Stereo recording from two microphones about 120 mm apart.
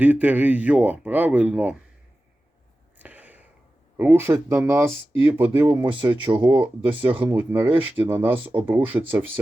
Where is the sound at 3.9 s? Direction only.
15° right (ahead or behind).